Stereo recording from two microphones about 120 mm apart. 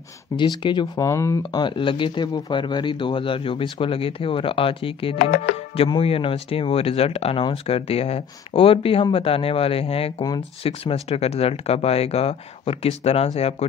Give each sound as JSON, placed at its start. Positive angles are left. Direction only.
{"t": 0.4, "sound": "speech", "side_deg": 40}
{"t": 1.0, "sound": "speech", "side_deg": 25}
{"t": 1.4, "sound": "speech", "side_deg": 40}